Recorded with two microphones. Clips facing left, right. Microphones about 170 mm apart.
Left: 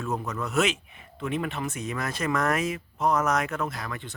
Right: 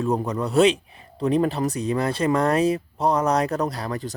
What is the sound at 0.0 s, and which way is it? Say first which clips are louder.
Speech: right 7 dB; 30° right (ahead or behind).